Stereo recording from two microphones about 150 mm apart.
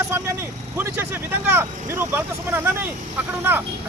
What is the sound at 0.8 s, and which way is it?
Speech, 15° right (ahead or behind).